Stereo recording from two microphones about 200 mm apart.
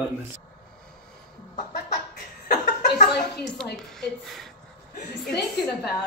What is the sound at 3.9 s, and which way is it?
Speech, centre (ahead or behind).